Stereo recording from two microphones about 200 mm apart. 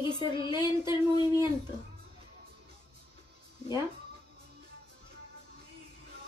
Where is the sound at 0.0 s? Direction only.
20° left (ahead or behind).